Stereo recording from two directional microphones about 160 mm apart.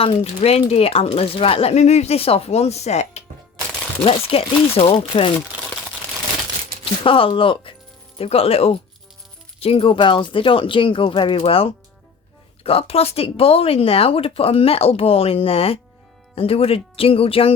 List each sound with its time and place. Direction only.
0.0 s speech: 40° left (ahead or behind)
5.5 s crumpling: 10° right (ahead or behind)
7.0 s speech: 35° left (ahead or behind)